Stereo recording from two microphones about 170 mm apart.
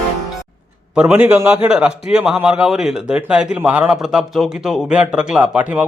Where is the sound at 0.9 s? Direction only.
10° right (ahead or behind).